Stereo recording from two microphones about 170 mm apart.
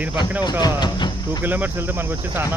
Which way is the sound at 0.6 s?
25° left (ahead or behind).